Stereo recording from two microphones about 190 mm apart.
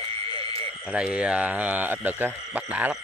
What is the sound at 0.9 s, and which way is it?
Speech, 5° right (ahead or behind).